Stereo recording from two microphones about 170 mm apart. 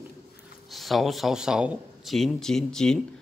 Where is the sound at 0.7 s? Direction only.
Centre (ahead or behind).